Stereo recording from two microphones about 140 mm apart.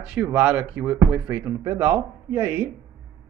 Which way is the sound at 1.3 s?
20° right (ahead or behind).